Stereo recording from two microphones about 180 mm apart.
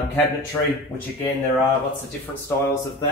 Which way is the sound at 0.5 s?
10° left (ahead or behind).